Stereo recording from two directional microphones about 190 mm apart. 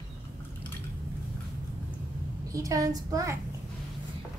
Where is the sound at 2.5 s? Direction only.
15° right (ahead or behind).